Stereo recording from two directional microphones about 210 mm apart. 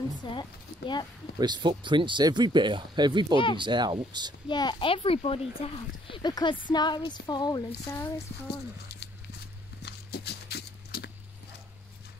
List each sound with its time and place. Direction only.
0.1 s a child's voice: 20° left (ahead or behind)
1.4 s speech: 20° right (ahead or behind)
4.5 s a child's voice: 20° left (ahead or behind)
9.8 s horse: 55° left (ahead or behind)